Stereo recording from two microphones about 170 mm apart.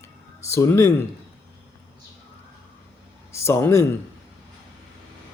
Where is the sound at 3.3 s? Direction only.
15° left (ahead or behind).